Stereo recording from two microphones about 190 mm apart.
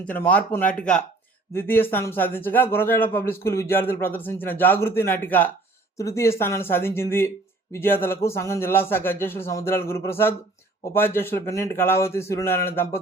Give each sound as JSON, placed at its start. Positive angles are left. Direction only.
{"t": 0.0, "sound": "speech", "side_deg": 10}